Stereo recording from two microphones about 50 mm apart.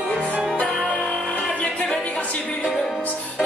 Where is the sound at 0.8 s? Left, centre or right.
Centre.